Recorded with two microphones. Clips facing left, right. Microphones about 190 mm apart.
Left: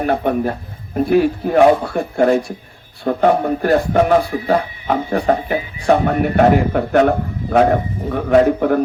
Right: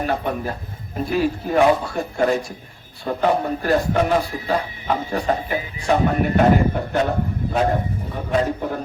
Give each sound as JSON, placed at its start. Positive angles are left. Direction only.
{"t": 0.0, "sound": "a man's voice", "side_deg": 55}